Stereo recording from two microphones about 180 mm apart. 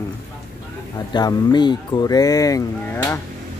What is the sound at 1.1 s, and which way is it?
Speech, 25° left (ahead or behind).